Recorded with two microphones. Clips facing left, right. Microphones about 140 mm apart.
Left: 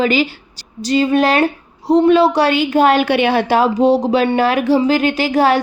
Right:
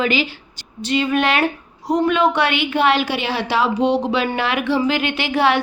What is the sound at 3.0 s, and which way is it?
Speech, 60° left (ahead or behind).